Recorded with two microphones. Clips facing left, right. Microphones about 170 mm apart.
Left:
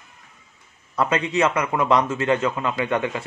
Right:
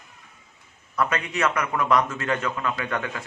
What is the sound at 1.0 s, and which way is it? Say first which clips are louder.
Speech: left 4 dB; 25° left (ahead or behind).